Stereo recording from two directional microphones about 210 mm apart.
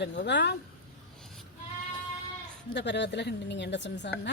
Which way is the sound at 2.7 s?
55° left (ahead or behind).